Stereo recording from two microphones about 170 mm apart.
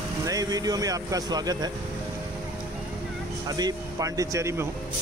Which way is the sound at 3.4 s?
20° right (ahead or behind).